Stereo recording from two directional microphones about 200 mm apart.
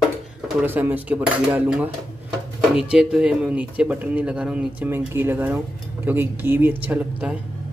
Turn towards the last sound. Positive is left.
turn(degrees=-5)  # may be behind; listen again after turning